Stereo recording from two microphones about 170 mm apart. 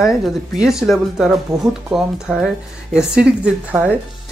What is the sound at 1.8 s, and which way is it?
Speech, 5° right (ahead or behind).